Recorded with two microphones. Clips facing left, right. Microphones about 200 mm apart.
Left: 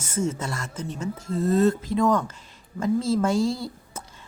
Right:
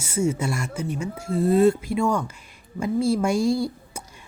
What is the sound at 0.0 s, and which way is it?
Speech, 10° right (ahead or behind).